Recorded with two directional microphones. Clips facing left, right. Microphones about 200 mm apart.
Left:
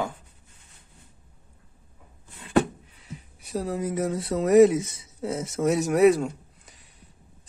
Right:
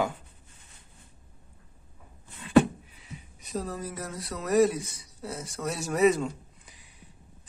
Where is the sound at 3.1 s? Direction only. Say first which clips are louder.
Left 4 dB; 10° left (ahead or behind).